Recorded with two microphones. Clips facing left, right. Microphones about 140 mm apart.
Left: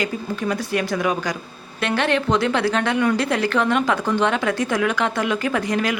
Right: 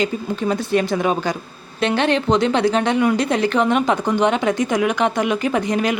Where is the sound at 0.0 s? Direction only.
25° right (ahead or behind).